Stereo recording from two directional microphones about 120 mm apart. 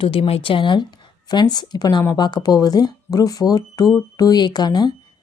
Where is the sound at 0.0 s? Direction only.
50° left (ahead or behind).